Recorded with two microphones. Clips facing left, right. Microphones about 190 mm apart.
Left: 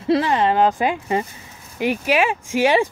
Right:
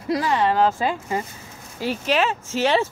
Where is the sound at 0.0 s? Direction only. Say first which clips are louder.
Left 3 dB; 25° left (ahead or behind).